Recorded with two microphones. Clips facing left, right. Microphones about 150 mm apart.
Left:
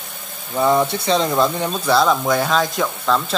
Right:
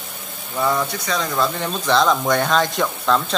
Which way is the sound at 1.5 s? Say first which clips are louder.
Left 2 dB; 10° left (ahead or behind).